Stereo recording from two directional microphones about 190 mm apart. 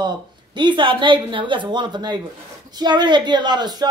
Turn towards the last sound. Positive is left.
turn(degrees=-20)  # may be behind; listen again after turning